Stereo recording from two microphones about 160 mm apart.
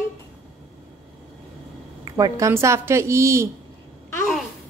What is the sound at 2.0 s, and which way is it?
Speech, 20° right (ahead or behind).